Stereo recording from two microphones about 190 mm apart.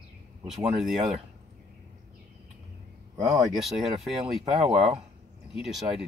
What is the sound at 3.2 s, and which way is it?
Speech, centre (ahead or behind).